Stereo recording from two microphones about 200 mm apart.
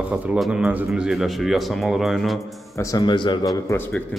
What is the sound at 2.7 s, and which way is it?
A man's voice, 20° left (ahead or behind).